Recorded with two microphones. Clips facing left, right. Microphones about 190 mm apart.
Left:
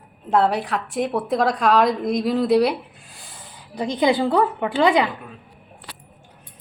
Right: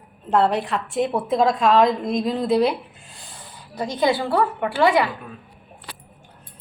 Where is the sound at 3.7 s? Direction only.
15° left (ahead or behind).